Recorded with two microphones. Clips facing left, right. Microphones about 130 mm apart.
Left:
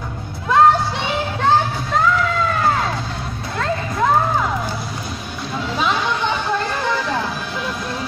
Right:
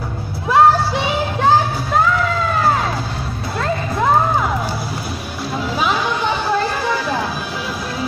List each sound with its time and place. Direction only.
0.5 s child singing: 5° right (ahead or behind)
5.8 s chatter: 5° right (ahead or behind)